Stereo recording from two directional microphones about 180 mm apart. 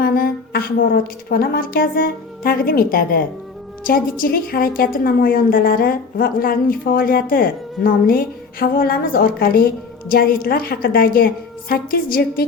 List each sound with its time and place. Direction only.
0.0 s a woman's voice: 60° left (ahead or behind)